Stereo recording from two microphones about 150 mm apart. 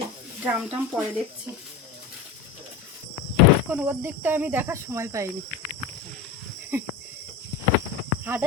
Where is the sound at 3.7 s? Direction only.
15° right (ahead or behind).